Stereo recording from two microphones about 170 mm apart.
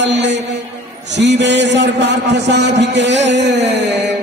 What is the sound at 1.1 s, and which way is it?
A man's voice, 90° right.